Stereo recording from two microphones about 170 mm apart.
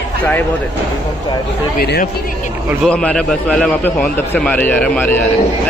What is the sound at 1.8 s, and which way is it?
Speech, 65° left (ahead or behind).